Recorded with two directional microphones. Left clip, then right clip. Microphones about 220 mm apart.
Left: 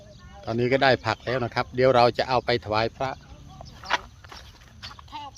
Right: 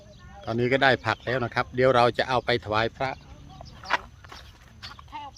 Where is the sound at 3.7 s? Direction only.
25° left (ahead or behind).